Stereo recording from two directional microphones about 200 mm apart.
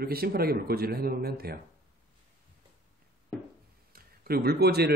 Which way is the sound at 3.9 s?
50° right (ahead or behind).